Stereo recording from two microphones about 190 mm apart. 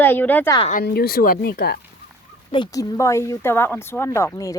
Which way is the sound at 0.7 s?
50° left (ahead or behind).